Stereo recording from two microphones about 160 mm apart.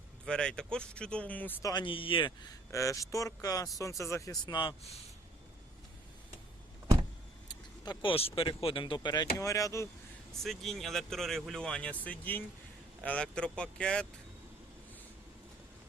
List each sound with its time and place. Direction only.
0.3 s speech: 5° left (ahead or behind)
1.7 s speech: 30° left (ahead or behind)
7.9 s speech: 35° left (ahead or behind); by 9.9 s 20° left (ahead or behind)
10.4 s speech: centre (ahead or behind)